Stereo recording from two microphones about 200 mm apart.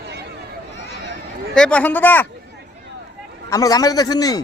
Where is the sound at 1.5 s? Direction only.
5° left (ahead or behind).